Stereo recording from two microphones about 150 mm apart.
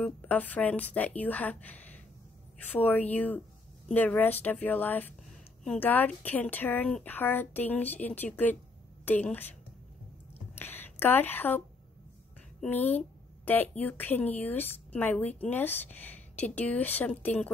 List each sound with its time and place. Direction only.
0.0 s a woman's voice: 10° left (ahead or behind)
10.6 s a woman's voice: 15° left (ahead or behind)